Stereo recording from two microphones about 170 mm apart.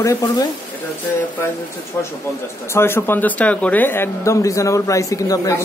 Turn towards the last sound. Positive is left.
turn(degrees=20)  # may be behind; listen again after turning